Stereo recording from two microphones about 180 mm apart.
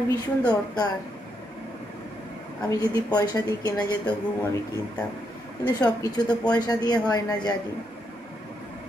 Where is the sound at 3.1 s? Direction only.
20° left (ahead or behind).